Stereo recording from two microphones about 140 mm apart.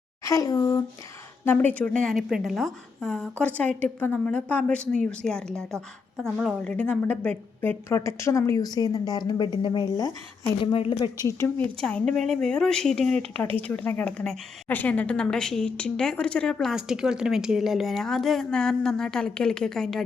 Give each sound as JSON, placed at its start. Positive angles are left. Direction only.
{"t": 0.3, "sound": "a woman's voice", "side_deg": 25}
{"t": 1.5, "sound": "a woman's voice", "side_deg": 15}
{"t": 11.3, "sound": "a woman's voice", "side_deg": 15}